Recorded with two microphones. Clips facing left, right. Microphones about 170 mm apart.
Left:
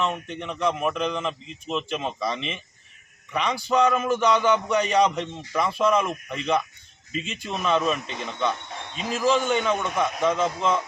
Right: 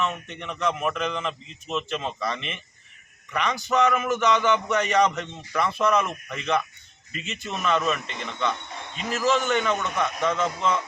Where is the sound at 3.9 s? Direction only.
30° left (ahead or behind).